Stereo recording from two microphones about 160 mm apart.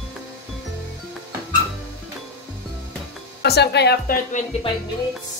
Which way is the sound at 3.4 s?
90° left.